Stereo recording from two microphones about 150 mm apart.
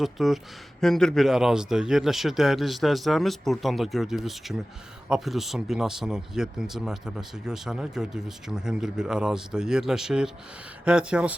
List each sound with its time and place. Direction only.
0.0 s speech: centre (ahead or behind)